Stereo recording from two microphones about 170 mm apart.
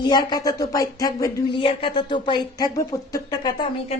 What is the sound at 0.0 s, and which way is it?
Speech, 25° left (ahead or behind).